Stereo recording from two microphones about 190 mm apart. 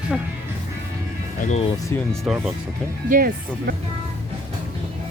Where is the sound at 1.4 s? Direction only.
40° left (ahead or behind).